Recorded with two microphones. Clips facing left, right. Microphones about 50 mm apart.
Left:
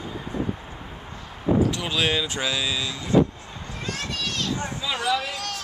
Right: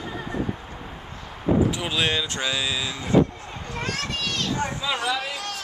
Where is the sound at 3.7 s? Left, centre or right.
Right.